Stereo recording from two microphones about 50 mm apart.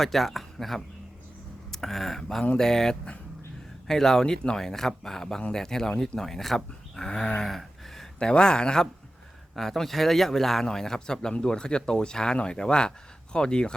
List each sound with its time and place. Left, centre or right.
0.0 s a man's voice: centre
7.4 s a sound: centre
8.2 s a man's voice: centre
9.6 s a man's voice: centre